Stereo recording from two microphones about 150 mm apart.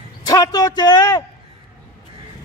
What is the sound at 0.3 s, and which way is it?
Speech, 25° left (ahead or behind).